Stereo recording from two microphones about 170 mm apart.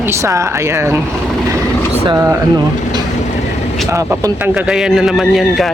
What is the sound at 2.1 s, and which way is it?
Speech, 15° right (ahead or behind).